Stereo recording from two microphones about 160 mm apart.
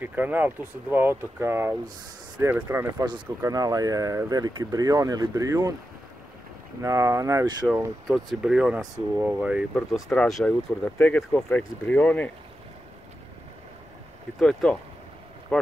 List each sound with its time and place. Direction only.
0.0 s speech: 10° right (ahead or behind)
6.8 s speech: 20° right (ahead or behind)
8.1 s speech: 5° right (ahead or behind)
10.1 s speech: 5° left (ahead or behind)
14.4 s speech: 5° left (ahead or behind)